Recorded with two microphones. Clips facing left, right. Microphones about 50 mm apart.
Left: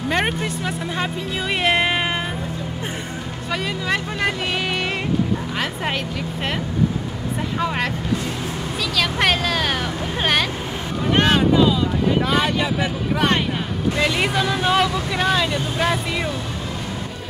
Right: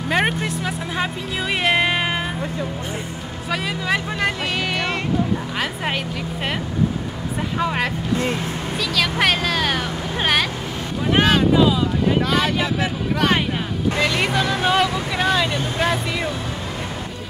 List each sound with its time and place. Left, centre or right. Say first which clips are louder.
0.1 s speech: right 2 dB; centre
3.4 s speech: right 1 dB; centre
7.5 s speech: right 1 dB; centre
12.2 s speech: even; centre